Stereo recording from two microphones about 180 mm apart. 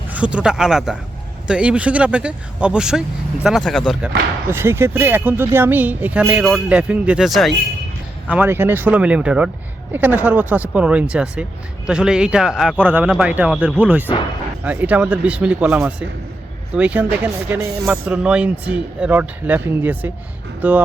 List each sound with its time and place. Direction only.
0.1 s speech: 5° right (ahead or behind)
4.4 s speech: 15° right (ahead or behind)
8.3 s speech: 10° right (ahead or behind)
17.9 s speech: 5° right (ahead or behind)